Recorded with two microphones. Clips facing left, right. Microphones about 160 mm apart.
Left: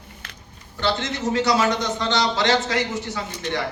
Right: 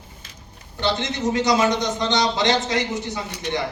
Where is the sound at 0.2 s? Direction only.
65° left (ahead or behind).